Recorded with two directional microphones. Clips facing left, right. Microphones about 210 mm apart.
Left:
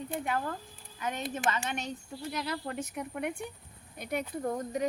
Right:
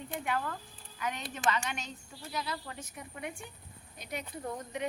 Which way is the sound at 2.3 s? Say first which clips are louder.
Left 3 dB; 60° left (ahead or behind).